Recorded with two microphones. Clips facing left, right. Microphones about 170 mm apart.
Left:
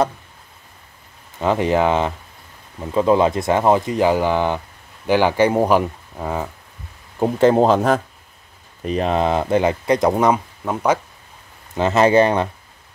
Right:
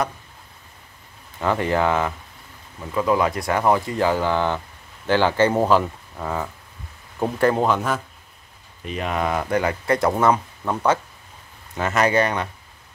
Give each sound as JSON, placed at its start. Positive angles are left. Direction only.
{"t": 1.4, "sound": "speech", "side_deg": 20}
{"t": 11.7, "sound": "speech", "side_deg": 25}